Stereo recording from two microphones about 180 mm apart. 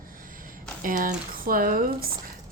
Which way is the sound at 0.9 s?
50° right (ahead or behind).